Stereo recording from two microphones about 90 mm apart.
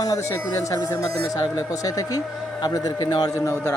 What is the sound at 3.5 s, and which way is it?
Speech, 25° left (ahead or behind).